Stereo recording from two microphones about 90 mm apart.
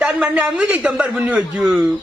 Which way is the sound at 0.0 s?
15° right (ahead or behind).